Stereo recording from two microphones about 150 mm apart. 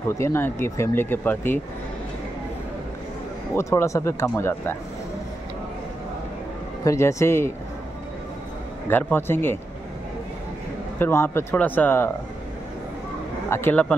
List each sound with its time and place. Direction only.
0.1 s speech: 15° left (ahead or behind)
3.5 s speech: 20° left (ahead or behind)
6.8 s speech: 20° left (ahead or behind)
8.8 s speech: 15° left (ahead or behind)
11.0 s speech: 15° left (ahead or behind)
13.5 s speech: 15° left (ahead or behind)